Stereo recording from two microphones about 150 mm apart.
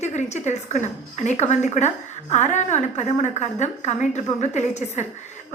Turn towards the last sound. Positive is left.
turn(degrees=50)  # may be behind; listen again after turning